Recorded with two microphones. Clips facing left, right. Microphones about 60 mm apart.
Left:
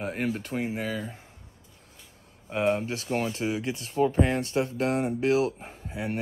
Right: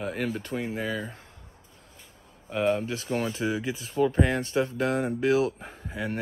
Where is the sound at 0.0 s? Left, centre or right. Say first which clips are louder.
Even; left.